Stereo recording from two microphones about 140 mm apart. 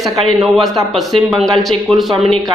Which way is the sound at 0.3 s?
Centre (ahead or behind).